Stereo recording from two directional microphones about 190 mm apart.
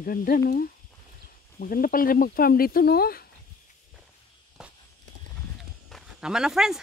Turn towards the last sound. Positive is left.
turn(degrees=-5)  # may be behind; listen again after turning